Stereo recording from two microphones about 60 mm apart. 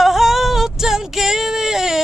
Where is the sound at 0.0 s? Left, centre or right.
Centre.